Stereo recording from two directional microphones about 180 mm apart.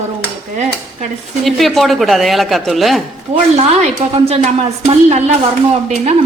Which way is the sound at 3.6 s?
35° right (ahead or behind).